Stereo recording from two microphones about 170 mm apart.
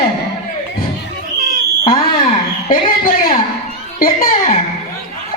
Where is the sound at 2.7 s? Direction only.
55° left (ahead or behind).